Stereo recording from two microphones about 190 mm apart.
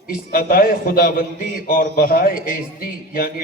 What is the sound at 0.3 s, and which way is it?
A man's voice, 50° left (ahead or behind).